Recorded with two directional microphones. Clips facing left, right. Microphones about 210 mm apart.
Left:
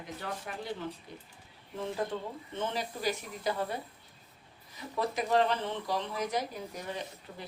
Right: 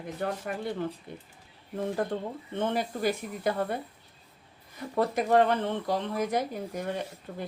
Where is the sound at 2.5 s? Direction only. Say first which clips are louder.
Right 6 dB; 55° right (ahead or behind).